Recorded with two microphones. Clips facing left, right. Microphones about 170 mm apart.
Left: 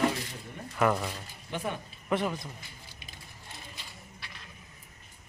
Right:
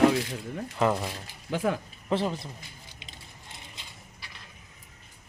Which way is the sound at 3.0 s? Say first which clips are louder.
Right 1 dB; 20° right (ahead or behind).